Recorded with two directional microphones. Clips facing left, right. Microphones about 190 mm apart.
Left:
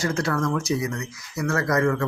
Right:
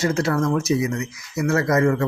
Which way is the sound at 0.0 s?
25° right (ahead or behind).